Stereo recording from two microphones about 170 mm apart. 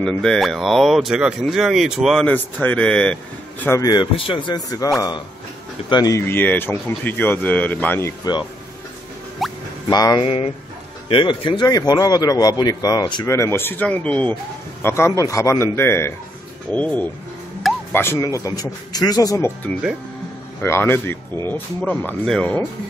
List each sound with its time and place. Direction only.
0.0 s speech: 5° left (ahead or behind)
3.8 s a man's voice: 25° left (ahead or behind); by 8.1 s 10° left (ahead or behind)
9.4 s music: centre (ahead or behind)
9.8 s a man's voice: 25° left (ahead or behind)
20.6 s speech: 15° left (ahead or behind)